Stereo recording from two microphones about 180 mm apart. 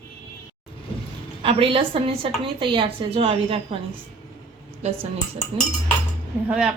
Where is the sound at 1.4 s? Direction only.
30° right (ahead or behind).